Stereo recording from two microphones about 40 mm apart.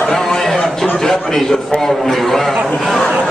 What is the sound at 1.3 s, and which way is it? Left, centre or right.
A man's voice, centre.